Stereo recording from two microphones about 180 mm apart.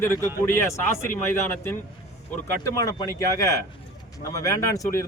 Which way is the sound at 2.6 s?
15° left (ahead or behind).